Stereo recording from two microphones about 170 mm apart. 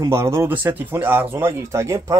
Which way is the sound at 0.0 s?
15° right (ahead or behind).